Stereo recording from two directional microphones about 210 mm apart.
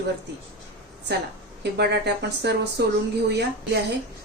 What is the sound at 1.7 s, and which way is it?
Speech, 50° right (ahead or behind).